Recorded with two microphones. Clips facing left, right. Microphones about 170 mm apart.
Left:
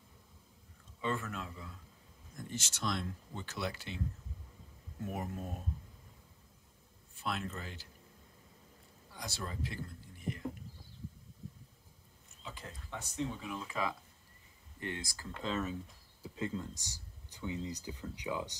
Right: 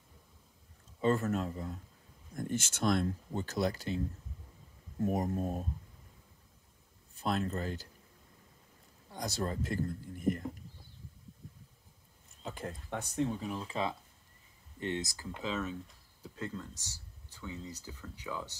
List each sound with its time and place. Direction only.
1.0 s speech: 40° right (ahead or behind)
5.0 s speech: 35° right (ahead or behind)
7.2 s speech: 40° right (ahead or behind)
9.1 s speech: 40° right (ahead or behind)
12.4 s speech: 50° right (ahead or behind)
13.4 s speech: 35° right (ahead or behind); by 15.4 s 20° right (ahead or behind)
15.4 s speech: centre (ahead or behind)